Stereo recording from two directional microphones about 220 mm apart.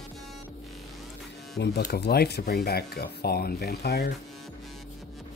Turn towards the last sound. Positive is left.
turn(degrees=45)  # may be behind; listen again after turning